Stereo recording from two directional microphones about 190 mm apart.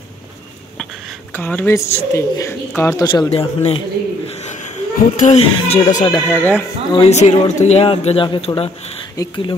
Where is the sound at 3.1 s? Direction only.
25° left (ahead or behind).